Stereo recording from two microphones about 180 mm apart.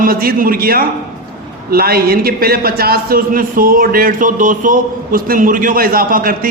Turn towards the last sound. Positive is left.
turn(degrees=-50)  # may be behind; listen again after turning